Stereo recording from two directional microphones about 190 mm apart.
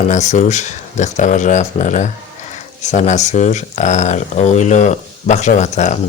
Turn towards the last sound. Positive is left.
turn(degrees=40)  # may be behind; listen again after turning